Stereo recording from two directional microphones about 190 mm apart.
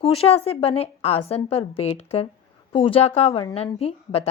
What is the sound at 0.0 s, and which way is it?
A woman's voice, 30° left (ahead or behind).